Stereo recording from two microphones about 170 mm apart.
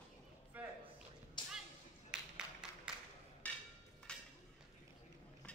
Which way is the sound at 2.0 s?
5° right (ahead or behind).